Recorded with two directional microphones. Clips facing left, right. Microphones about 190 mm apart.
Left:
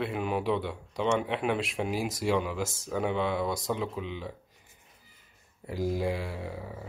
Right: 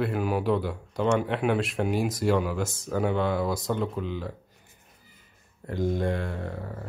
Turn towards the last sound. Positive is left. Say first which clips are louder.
# right 3 dB
turn(degrees=5)  # may be behind; listen again after turning